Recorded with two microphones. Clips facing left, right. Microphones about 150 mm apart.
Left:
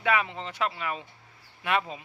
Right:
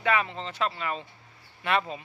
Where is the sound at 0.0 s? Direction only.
10° left (ahead or behind).